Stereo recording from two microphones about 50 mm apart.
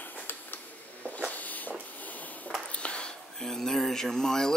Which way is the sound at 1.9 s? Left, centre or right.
Left.